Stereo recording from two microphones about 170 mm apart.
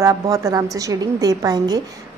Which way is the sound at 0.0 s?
20° right (ahead or behind).